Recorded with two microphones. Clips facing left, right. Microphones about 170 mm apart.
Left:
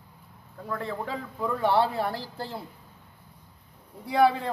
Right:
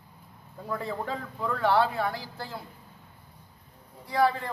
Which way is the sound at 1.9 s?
30° left (ahead or behind).